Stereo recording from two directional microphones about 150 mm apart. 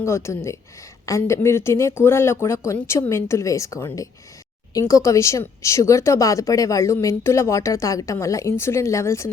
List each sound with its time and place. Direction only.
0.0 s speech: 20° left (ahead or behind)